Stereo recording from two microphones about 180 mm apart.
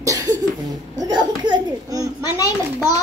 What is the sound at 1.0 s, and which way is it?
Speech, 25° right (ahead or behind).